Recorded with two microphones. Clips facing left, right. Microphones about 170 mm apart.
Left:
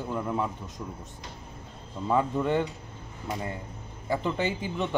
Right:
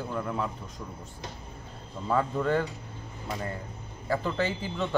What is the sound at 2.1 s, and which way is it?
Speech, 15° left (ahead or behind).